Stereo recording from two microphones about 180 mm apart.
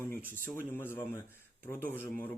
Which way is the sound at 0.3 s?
10° left (ahead or behind).